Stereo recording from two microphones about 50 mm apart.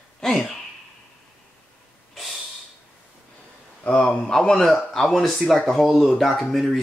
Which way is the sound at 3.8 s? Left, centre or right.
Left.